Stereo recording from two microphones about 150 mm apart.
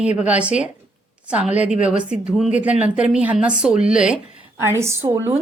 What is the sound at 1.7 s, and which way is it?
Speech, 55° left (ahead or behind).